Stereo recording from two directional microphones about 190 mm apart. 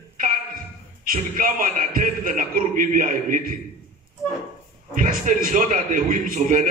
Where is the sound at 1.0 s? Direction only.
45° right (ahead or behind).